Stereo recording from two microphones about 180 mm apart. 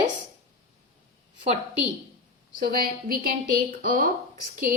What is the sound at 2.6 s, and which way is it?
A woman's voice, 55° right (ahead or behind).